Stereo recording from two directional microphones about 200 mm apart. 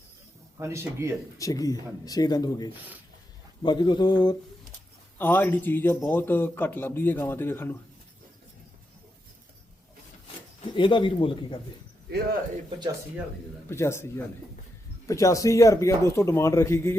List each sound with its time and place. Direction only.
0.6 s speech: 15° right (ahead or behind)
1.4 s speech: 15° left (ahead or behind)
5.1 s a man's voice: 10° left (ahead or behind)
10.8 s speech: 25° left (ahead or behind)
13.7 s a man's voice: 15° left (ahead or behind)